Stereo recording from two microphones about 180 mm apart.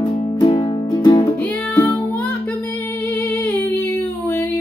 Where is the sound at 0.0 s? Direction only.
30° left (ahead or behind).